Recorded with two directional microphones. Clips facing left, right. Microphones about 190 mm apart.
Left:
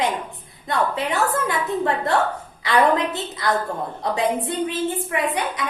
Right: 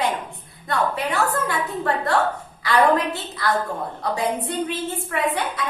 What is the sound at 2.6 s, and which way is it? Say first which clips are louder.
A woman's voice: even; 20° left (ahead or behind).